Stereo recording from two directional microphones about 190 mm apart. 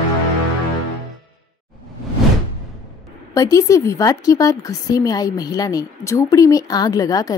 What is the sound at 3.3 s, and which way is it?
Speech, 15° left (ahead or behind).